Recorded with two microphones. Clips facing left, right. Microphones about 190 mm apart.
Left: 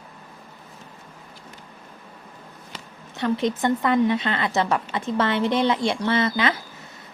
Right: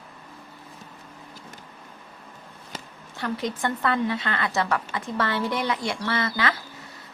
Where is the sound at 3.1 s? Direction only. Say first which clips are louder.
Left 6 dB; 20° left (ahead or behind).